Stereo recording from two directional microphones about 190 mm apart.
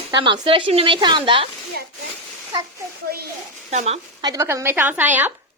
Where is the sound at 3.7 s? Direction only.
35° right (ahead or behind).